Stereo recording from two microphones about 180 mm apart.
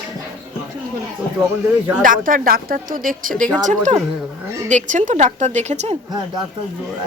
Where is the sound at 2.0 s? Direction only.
50° right (ahead or behind).